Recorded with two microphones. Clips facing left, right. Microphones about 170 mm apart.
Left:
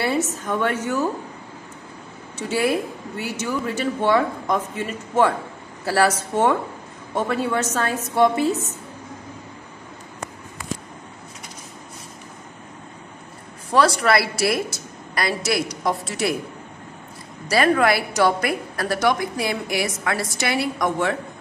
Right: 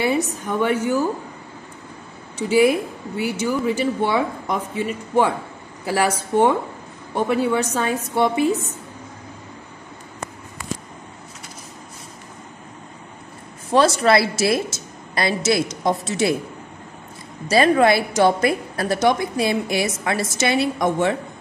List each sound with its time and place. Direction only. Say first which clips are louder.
0.0 s speech: right 2 dB; 10° right (ahead or behind)
2.3 s speech: right 5 dB; 10° right (ahead or behind)
13.7 s a woman's voice: right 2 dB; 20° right (ahead or behind)
17.5 s a woman's voice: right 3 dB; 25° right (ahead or behind)